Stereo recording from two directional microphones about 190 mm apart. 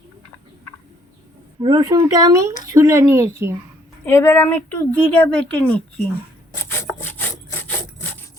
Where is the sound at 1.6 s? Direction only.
25° right (ahead or behind).